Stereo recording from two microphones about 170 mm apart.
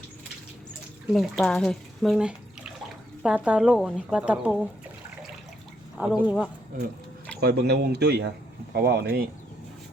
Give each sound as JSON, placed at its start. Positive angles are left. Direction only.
{"t": 1.1, "sound": "speech", "side_deg": 0}
{"t": 6.0, "sound": "speech", "side_deg": -10}
{"t": 7.4, "sound": "speech", "side_deg": -70}